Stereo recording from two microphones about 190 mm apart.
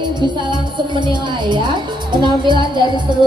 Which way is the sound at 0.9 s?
25° right (ahead or behind).